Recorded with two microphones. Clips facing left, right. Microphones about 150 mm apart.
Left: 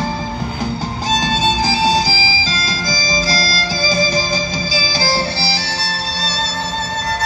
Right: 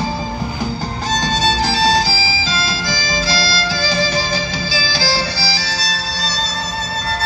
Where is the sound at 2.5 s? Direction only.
40° left (ahead or behind).